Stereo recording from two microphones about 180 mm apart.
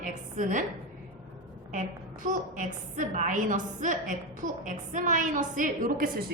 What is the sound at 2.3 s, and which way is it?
A woman's voice, 45° right (ahead or behind).